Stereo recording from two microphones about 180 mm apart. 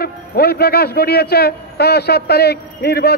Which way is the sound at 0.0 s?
60° left (ahead or behind).